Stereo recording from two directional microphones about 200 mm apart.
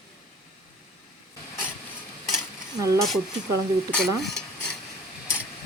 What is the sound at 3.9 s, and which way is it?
Stir, 5° left (ahead or behind).